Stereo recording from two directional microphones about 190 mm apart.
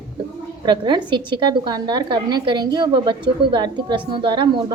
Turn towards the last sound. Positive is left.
turn(degrees=-25)  # may be behind; listen again after turning